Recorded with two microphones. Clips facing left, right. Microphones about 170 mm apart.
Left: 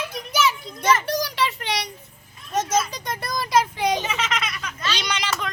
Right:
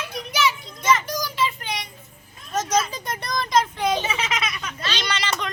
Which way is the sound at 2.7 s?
Centre (ahead or behind).